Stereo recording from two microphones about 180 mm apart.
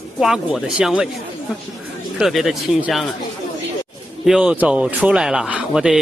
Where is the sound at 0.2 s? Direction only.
5° right (ahead or behind).